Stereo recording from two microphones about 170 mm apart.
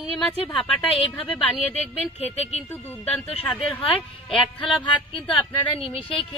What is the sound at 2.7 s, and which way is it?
Speech, 10° left (ahead or behind).